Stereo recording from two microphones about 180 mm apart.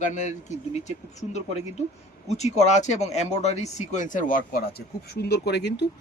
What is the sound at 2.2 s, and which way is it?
Speech, 40° left (ahead or behind).